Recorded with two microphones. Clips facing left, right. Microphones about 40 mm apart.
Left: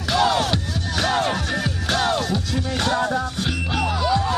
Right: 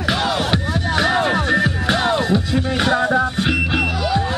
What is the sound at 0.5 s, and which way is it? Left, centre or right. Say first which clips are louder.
Music: right 6 dB; right.